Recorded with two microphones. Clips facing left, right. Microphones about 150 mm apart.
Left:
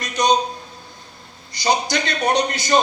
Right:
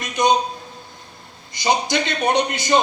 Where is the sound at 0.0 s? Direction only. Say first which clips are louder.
Even; 20° right (ahead or behind).